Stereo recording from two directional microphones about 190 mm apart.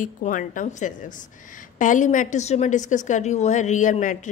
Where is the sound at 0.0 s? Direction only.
45° left (ahead or behind).